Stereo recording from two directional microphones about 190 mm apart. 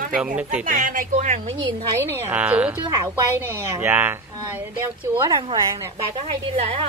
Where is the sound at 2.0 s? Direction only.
10° right (ahead or behind).